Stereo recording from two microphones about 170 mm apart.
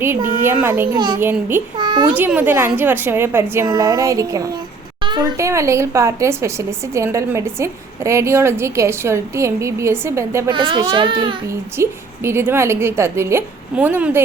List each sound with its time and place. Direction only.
0.2 s a woman's voice: 55° right (ahead or behind)
0.4 s speech: 15° right (ahead or behind)
0.9 s speech: 25° right (ahead or behind)
1.2 s speech: 15° right (ahead or behind)
1.8 s a child's voice: 25° right (ahead or behind)
2.1 s speech: 10° right (ahead or behind)
10.5 s speech: 30° right (ahead or behind)
11.4 s speech: 15° right (ahead or behind)